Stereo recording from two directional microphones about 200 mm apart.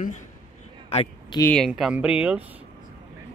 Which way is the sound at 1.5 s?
Centre (ahead or behind).